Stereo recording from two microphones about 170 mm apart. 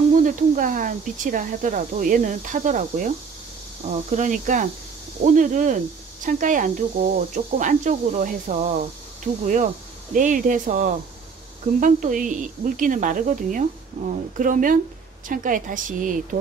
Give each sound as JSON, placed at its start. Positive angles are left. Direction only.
{"t": 0.2, "sound": "speech", "side_deg": -50}